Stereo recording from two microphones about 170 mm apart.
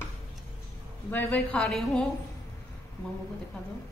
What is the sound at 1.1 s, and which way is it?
Speech, 10° left (ahead or behind).